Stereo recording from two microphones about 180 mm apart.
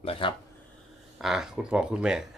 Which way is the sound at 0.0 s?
30° left (ahead or behind).